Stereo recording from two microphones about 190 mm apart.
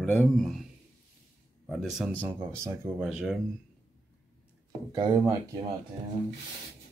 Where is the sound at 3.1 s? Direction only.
Centre (ahead or behind).